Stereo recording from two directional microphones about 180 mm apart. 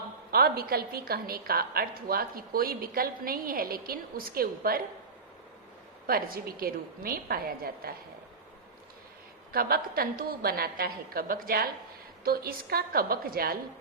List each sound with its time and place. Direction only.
0.3 s a woman's voice: 55° right (ahead or behind)
6.1 s a woman's voice: 55° right (ahead or behind)
9.5 s a woman's voice: 55° right (ahead or behind)